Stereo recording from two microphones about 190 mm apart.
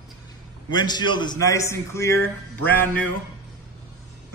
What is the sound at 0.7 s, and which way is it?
A man's voice, 20° left (ahead or behind).